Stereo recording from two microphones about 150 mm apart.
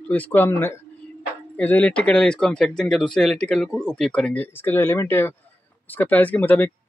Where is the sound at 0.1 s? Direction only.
10° left (ahead or behind).